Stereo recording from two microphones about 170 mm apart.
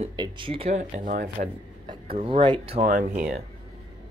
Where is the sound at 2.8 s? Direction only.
50° right (ahead or behind).